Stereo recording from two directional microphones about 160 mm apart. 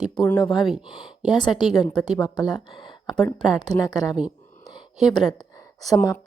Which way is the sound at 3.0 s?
25° left (ahead or behind).